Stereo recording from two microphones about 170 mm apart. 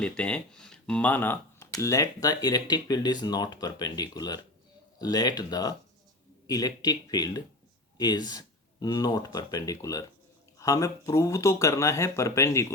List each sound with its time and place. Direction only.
0.0 s speech: 5° left (ahead or behind)